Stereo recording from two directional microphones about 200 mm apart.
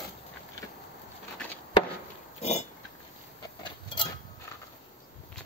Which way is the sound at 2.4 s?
35° left (ahead or behind).